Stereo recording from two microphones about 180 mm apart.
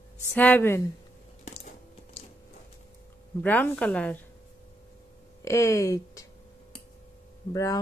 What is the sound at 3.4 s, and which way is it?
Speech, 10° left (ahead or behind).